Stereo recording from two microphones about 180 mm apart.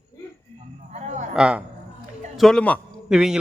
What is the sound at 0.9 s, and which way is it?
Speech, 40° right (ahead or behind).